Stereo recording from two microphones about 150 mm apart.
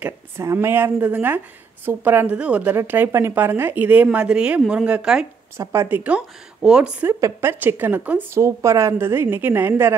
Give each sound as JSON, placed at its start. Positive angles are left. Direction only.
{"t": 0.0, "sound": "a woman's voice", "side_deg": -20}
{"t": 5.6, "sound": "a woman's voice", "side_deg": -20}